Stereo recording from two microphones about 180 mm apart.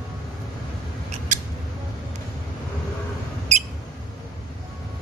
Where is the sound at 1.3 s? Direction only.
45° right (ahead or behind).